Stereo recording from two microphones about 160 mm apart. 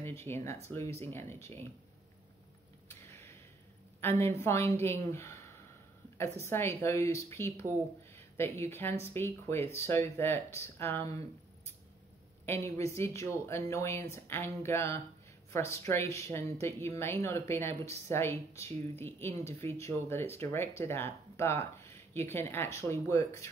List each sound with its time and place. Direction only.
0.0 s speech: 15° left (ahead or behind)
2.9 s a sound: 15° left (ahead or behind)
4.0 s speech: 15° left (ahead or behind)
6.4 s speech: 15° left (ahead or behind)